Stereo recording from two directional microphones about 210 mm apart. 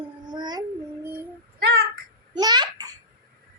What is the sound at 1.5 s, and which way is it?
Speech, 50° right (ahead or behind).